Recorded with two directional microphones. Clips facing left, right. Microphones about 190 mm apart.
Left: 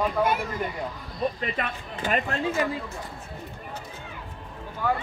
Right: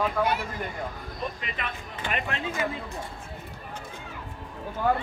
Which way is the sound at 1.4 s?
40° left (ahead or behind).